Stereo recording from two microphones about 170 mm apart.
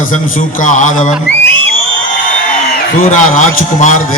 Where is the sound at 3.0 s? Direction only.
45° left (ahead or behind).